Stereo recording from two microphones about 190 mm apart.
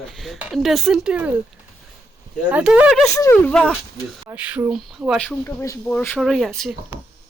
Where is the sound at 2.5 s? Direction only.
5° right (ahead or behind).